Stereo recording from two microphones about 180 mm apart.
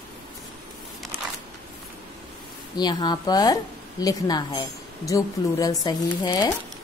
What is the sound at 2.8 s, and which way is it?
A woman's voice, 20° left (ahead or behind).